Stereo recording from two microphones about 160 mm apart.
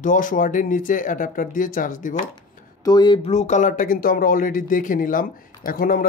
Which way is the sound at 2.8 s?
25° left (ahead or behind).